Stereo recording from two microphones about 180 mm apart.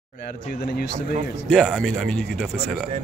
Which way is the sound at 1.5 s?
Centre (ahead or behind).